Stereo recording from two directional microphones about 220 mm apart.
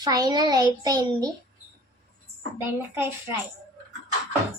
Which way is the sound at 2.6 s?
10° right (ahead or behind).